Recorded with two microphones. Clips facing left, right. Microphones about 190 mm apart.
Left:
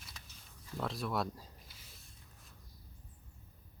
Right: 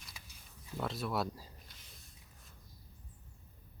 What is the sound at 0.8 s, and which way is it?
Speech, centre (ahead or behind).